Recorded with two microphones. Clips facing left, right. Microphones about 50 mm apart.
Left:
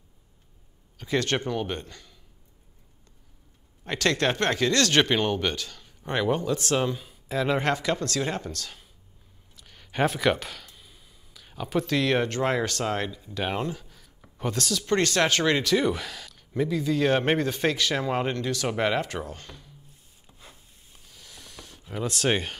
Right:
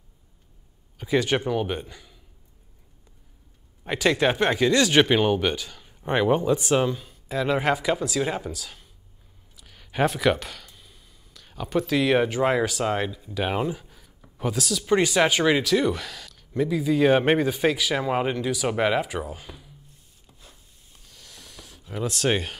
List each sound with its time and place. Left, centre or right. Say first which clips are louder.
0.9 s speech: right 3 dB; centre
3.8 s speech: right 3 dB; centre
6.9 s speech: right 1 dB; centre
16.7 s speech: right 4 dB; centre
20.2 s a sound: left 2 dB; centre